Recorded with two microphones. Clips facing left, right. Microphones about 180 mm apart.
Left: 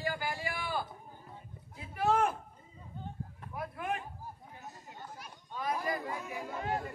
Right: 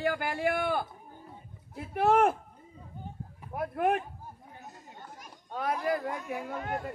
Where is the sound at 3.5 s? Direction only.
60° right (ahead or behind).